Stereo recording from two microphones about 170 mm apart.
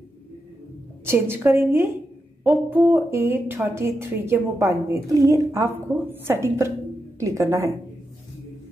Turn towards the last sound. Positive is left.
turn(degrees=-15)  # may be behind; listen again after turning